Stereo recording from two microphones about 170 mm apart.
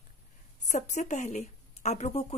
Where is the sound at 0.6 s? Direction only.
45° left (ahead or behind).